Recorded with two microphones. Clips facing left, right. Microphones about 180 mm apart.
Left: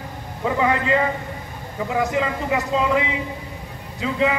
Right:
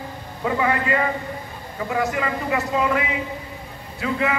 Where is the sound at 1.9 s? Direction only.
20° left (ahead or behind).